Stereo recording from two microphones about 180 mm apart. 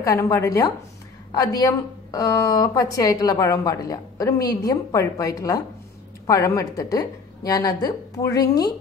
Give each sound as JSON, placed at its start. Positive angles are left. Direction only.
{"t": 0.0, "sound": "speech", "side_deg": 20}